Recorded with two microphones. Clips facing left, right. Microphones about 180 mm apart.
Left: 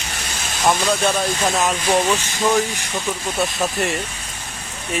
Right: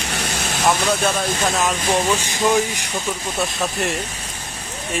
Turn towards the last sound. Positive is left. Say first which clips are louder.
# left 1 dB
turn(degrees=0)  # may be behind; listen again after turning